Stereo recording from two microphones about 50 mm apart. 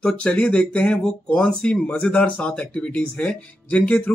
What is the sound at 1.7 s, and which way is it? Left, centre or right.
Speech, left.